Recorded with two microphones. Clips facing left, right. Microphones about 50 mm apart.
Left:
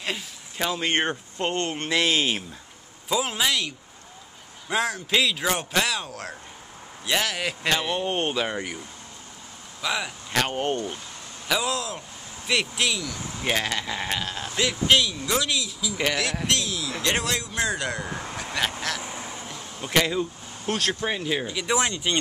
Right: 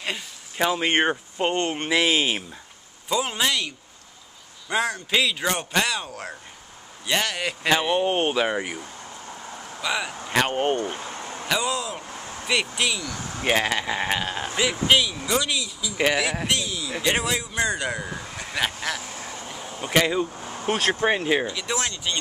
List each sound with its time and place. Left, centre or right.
0.6 s speech: centre
7.7 s speech: centre
10.3 s speech: centre
10.8 s a sound: right
11.4 s speech: centre
13.5 s speech: centre
14.6 s speech: centre
18.3 s vehicle: centre
19.2 s a sound: centre
19.9 s speech: centre
20.6 s speech: right
21.5 s speech: centre